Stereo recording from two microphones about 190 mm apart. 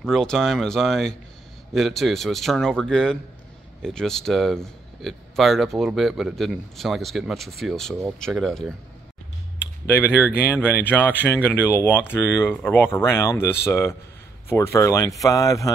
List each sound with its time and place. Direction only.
0.0 s speech: 5° left (ahead or behind)
9.8 s speech: 10° left (ahead or behind)